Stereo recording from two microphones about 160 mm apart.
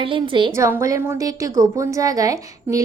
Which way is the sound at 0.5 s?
15° right (ahead or behind).